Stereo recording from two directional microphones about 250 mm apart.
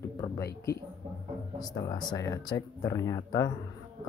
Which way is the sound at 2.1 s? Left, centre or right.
Centre.